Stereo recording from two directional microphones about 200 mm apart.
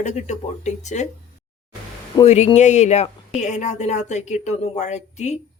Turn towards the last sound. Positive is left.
turn(degrees=35)  # may be behind; listen again after turning